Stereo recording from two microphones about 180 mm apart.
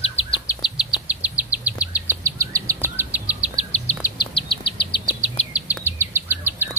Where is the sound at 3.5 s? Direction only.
40° left (ahead or behind).